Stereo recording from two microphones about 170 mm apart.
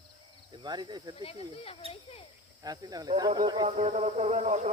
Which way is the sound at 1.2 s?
35° left (ahead or behind).